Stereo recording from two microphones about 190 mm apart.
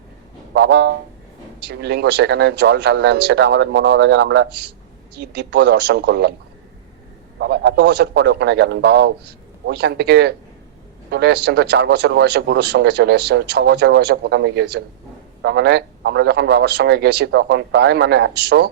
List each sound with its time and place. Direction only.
0.5 s speech: 60° right (ahead or behind)
7.3 s speech: 65° right (ahead or behind)